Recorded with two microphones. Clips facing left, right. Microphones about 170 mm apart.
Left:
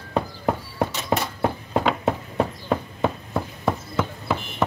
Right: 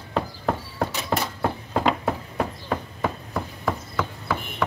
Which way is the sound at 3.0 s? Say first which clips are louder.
Left 3 dB; 25° left (ahead or behind).